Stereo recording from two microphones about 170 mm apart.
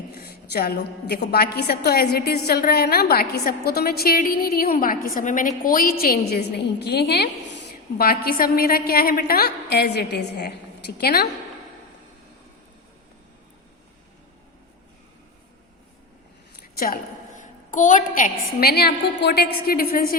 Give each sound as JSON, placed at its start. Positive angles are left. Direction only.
{"t": 0.1, "sound": "a woman's voice", "side_deg": 65}
{"t": 16.6, "sound": "a woman's voice", "side_deg": 60}